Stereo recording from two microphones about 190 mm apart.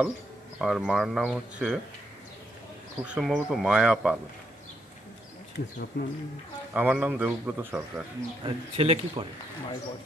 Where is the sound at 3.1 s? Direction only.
5° right (ahead or behind).